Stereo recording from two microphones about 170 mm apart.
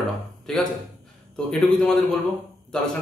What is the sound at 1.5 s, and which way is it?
Speech, 5° left (ahead or behind).